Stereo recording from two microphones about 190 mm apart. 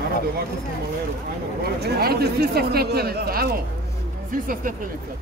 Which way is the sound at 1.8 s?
55° right (ahead or behind).